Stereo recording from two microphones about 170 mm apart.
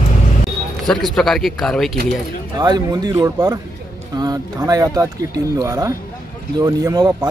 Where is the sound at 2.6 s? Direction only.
20° right (ahead or behind).